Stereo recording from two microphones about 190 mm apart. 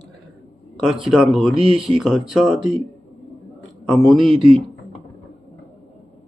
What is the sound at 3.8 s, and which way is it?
Speech, centre (ahead or behind).